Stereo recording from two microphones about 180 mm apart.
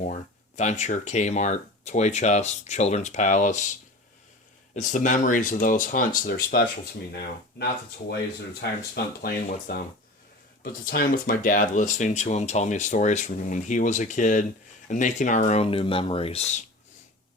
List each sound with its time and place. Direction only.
0.0 s speech: 40° left (ahead or behind)
4.7 s speech: 45° left (ahead or behind); by 6.7 s 60° left (ahead or behind)
9.2 s speech: 55° left (ahead or behind); by 16.6 s 35° left (ahead or behind)